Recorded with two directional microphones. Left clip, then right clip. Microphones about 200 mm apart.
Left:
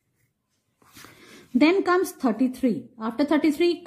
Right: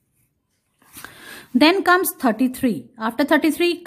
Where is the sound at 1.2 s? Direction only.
35° right (ahead or behind).